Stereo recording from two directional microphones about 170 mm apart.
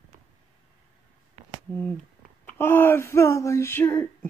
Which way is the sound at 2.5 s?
15° left (ahead or behind).